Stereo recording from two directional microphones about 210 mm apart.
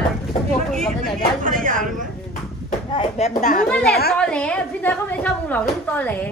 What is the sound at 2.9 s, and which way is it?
Speech, 30° left (ahead or behind).